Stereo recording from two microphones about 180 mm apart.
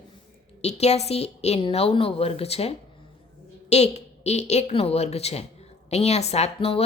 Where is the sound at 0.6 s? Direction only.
35° left (ahead or behind).